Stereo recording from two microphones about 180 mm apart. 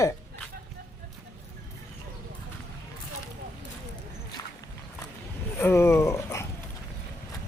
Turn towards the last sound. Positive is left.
turn(degrees=15)  # may be behind; listen again after turning